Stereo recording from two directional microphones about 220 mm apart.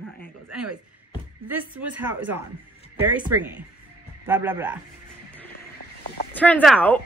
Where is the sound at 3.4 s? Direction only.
10° right (ahead or behind).